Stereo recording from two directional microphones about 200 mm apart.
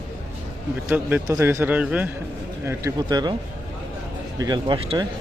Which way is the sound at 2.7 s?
15° right (ahead or behind).